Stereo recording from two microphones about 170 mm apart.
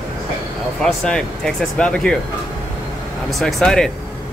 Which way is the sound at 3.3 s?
Centre (ahead or behind).